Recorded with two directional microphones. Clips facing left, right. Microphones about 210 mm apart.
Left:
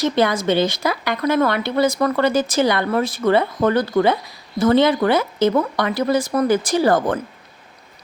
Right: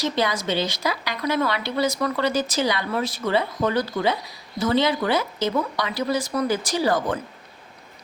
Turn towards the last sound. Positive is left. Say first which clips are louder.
# left 5 dB
turn(degrees=55)  # may be behind; listen again after turning